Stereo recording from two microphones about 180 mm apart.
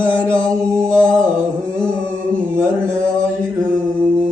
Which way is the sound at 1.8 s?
5° left (ahead or behind).